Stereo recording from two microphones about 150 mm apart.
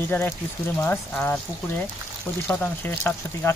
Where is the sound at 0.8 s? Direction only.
10° left (ahead or behind).